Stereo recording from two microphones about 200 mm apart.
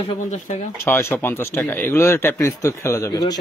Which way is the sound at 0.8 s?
10° left (ahead or behind).